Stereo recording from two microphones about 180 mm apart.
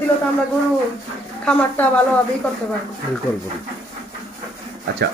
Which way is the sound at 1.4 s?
10° left (ahead or behind).